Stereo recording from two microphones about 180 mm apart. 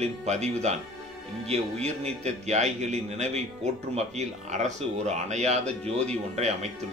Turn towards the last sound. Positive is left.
turn(degrees=-40)  # may be behind; listen again after turning